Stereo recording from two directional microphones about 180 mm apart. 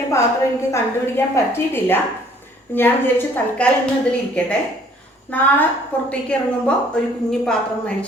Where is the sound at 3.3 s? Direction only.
5° left (ahead or behind).